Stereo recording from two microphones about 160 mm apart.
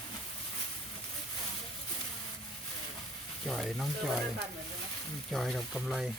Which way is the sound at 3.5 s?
5° left (ahead or behind).